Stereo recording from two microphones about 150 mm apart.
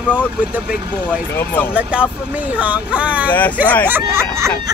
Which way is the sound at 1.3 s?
15° left (ahead or behind).